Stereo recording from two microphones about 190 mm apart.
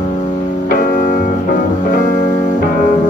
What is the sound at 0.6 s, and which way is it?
Music, 45° left (ahead or behind).